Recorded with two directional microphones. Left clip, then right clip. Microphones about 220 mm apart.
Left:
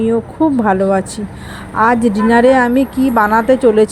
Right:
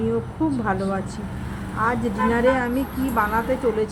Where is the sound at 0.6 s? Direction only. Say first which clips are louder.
Left 12 dB; 35° left (ahead or behind).